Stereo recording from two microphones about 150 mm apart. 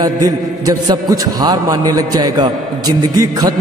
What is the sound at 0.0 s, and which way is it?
A man's voice, 25° right (ahead or behind).